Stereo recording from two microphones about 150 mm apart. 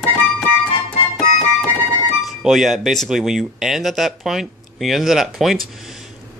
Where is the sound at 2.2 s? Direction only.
Centre (ahead or behind).